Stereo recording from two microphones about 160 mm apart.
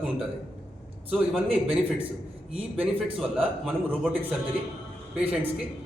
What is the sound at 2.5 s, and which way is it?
Speech, 35° right (ahead or behind).